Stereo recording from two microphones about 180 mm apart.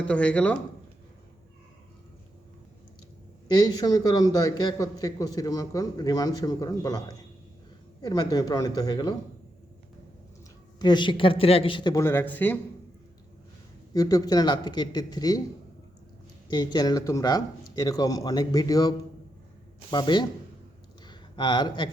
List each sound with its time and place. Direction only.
0.0 s speech: 5° left (ahead or behind)
3.5 s a man's voice: 20° left (ahead or behind)
10.8 s a man's voice: 25° left (ahead or behind)
13.9 s a man's voice: 20° left (ahead or behind)
16.5 s a man's voice: 20° left (ahead or behind)
21.1 s a sound: 25° left (ahead or behind)